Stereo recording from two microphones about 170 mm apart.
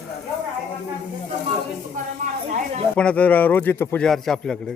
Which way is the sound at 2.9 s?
5° left (ahead or behind).